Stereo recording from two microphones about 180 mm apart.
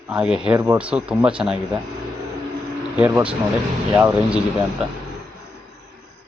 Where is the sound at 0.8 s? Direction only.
5° right (ahead or behind).